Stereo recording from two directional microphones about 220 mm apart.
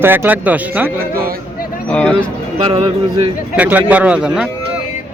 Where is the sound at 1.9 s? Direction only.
5° left (ahead or behind).